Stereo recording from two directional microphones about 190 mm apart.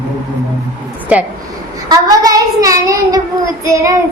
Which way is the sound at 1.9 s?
20° right (ahead or behind).